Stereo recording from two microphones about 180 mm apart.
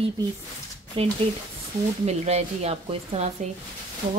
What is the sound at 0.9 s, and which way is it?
A woman's voice, 30° right (ahead or behind).